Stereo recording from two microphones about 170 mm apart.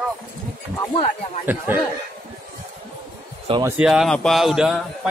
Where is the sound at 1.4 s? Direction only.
10° right (ahead or behind).